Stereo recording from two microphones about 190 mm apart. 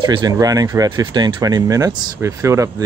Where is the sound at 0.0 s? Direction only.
20° right (ahead or behind).